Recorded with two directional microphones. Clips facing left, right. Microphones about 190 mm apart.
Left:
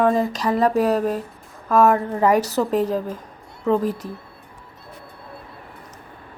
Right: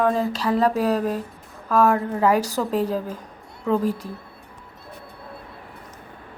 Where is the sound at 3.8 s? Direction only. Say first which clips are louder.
Even; 40° left (ahead or behind).